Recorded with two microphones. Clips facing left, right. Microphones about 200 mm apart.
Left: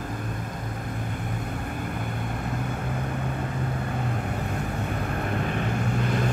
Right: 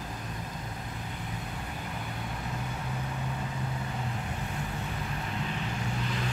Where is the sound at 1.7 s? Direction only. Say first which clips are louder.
Left 7 dB; 55° left (ahead or behind).